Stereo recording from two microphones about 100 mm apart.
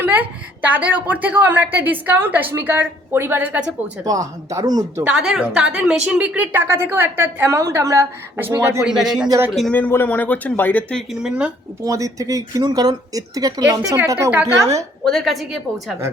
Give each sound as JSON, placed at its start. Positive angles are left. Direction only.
{"t": 0.0, "sound": "a woman's voice", "side_deg": -15}
{"t": 4.0, "sound": "speech", "side_deg": -35}
{"t": 5.0, "sound": "a woman's voice", "side_deg": -10}
{"t": 8.9, "sound": "speech", "side_deg": -5}
{"t": 9.7, "sound": "speech", "side_deg": 20}
{"t": 10.9, "sound": "a woman's voice", "side_deg": -5}
{"t": 11.8, "sound": "speech", "side_deg": -35}
{"t": 15.0, "sound": "speech", "side_deg": 5}